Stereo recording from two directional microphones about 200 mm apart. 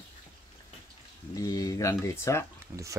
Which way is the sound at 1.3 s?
15° left (ahead or behind).